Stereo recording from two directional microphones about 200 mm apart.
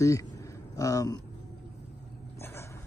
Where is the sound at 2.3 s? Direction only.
10° left (ahead or behind).